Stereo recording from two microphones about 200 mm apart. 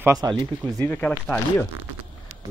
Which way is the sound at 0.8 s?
5° left (ahead or behind).